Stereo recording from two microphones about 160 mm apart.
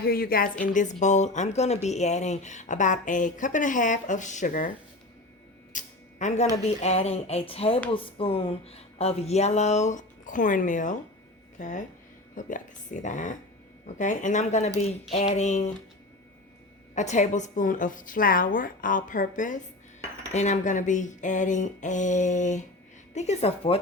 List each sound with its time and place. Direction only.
0.0 s a woman's voice: 65° left (ahead or behind)
0.7 s speech: 50° left (ahead or behind)
5.7 s a sound: 50° left (ahead or behind)
6.6 s speech: 40° left (ahead or behind)
16.9 s a woman's voice: 50° left (ahead or behind)